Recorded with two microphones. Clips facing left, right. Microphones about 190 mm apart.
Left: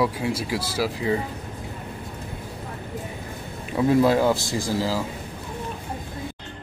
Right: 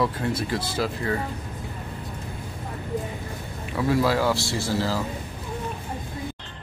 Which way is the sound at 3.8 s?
20° left (ahead or behind).